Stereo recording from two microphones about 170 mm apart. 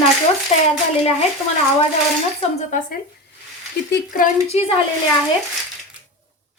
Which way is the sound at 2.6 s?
50° left (ahead or behind).